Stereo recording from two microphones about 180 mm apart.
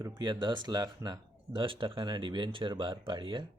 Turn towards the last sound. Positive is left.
turn(degrees=-25)  # may be behind; listen again after turning